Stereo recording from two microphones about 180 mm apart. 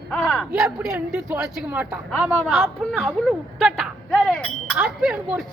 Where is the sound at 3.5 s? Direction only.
Centre (ahead or behind).